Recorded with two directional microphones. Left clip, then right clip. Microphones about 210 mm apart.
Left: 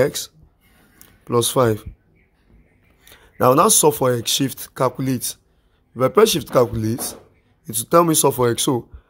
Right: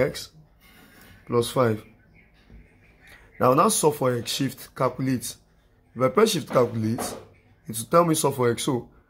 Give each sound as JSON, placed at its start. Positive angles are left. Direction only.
{"t": 0.0, "sound": "speech", "side_deg": 45}
{"t": 3.1, "sound": "speech", "side_deg": 45}